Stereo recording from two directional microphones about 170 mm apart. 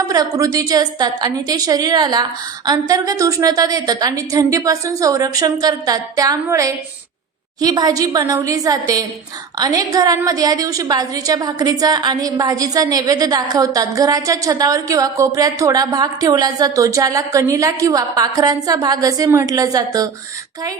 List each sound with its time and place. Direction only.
0.1 s a woman's voice: 20° right (ahead or behind)